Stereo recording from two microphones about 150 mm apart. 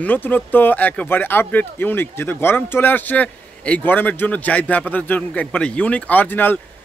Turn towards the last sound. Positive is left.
turn(degrees=10)  # may be behind; listen again after turning